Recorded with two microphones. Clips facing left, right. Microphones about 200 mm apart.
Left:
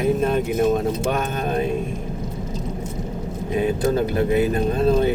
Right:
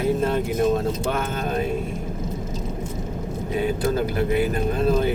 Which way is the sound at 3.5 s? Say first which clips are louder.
Left 3 dB; 20° left (ahead or behind).